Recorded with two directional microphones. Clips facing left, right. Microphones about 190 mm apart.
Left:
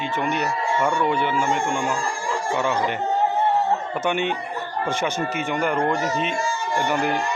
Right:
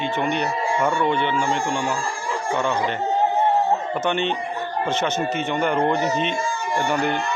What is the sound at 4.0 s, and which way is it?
Speech, 10° left (ahead or behind).